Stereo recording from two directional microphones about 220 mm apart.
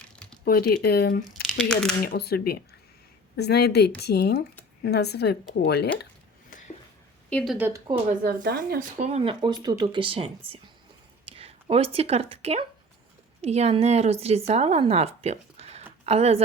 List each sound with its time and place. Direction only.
0.4 s speech: 45° left (ahead or behind)
1.2 s speech: centre (ahead or behind)
2.0 s speech: 45° left (ahead or behind)
7.3 s speech: 5° left (ahead or behind)
8.2 s speech: 45° right (ahead or behind); by 16.4 s 30° right (ahead or behind)